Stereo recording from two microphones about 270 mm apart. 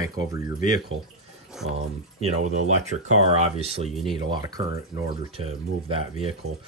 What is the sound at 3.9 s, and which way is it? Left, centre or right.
Speech, centre.